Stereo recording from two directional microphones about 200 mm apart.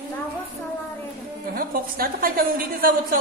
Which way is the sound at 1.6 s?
45° right (ahead or behind).